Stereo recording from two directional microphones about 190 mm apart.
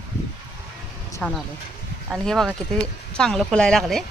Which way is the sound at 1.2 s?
5° left (ahead or behind).